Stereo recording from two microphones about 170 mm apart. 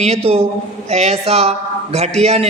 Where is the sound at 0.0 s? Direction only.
35° right (ahead or behind).